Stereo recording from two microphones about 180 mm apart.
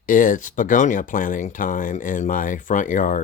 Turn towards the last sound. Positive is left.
turn(degrees=45)  # may be behind; listen again after turning